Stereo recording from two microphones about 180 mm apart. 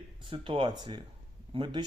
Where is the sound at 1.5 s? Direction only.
25° right (ahead or behind).